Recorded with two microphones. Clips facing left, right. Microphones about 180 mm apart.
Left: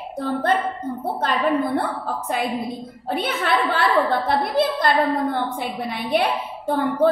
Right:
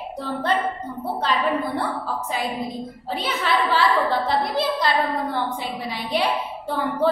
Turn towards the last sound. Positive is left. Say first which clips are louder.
# left 3 dB
turn(degrees=50)  # may be behind; listen again after turning